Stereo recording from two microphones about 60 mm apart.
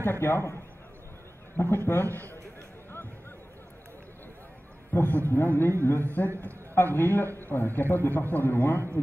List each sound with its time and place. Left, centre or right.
0.0 s a man's voice: left
1.6 s a man's voice: left
4.9 s a man's voice: left
6.4 s a sound: left
7.0 s a man's voice: left